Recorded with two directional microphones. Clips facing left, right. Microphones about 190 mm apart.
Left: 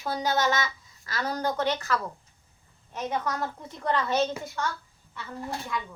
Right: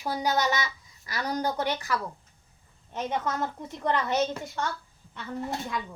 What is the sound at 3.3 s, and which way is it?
A woman's voice, 20° right (ahead or behind).